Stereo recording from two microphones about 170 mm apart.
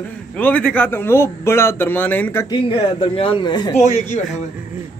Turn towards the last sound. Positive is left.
turn(degrees=45)  # may be behind; listen again after turning